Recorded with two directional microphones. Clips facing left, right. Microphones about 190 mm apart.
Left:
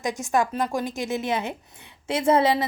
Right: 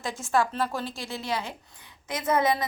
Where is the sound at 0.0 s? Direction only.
15° left (ahead or behind).